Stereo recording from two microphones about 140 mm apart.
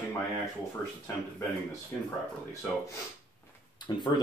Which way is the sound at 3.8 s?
30° left (ahead or behind).